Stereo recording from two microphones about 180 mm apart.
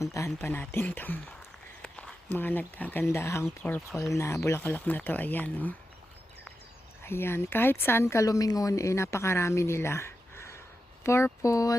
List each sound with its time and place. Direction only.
0.0 s a woman's voice: 15° left (ahead or behind)
7.0 s a woman's voice: 15° left (ahead or behind)